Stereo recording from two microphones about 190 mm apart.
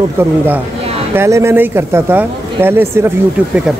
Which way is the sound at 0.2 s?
15° right (ahead or behind).